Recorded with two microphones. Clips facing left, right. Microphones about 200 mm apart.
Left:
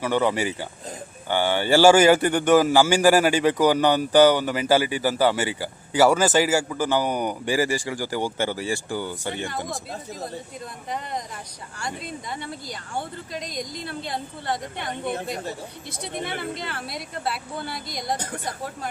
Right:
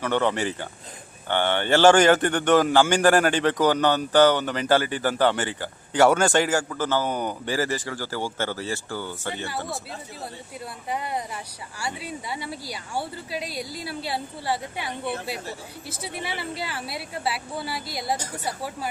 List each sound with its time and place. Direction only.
0.0 s speech: 10° left (ahead or behind)
10.8 s a woman's voice: 10° right (ahead or behind)